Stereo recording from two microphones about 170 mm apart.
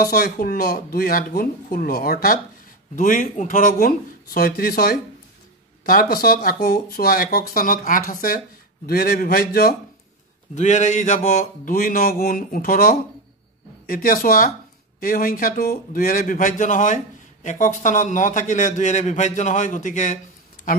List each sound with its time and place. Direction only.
0.0 s speech: 60° left (ahead or behind)
10.5 s speech: 45° left (ahead or behind)